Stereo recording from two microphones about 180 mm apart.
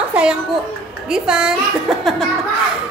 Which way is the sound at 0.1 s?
5° right (ahead or behind).